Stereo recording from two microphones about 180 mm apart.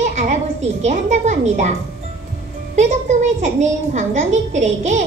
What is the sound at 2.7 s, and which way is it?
A woman's voice, 40° right (ahead or behind).